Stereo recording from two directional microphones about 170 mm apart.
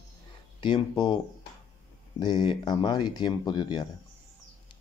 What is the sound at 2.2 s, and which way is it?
Speech, 25° left (ahead or behind).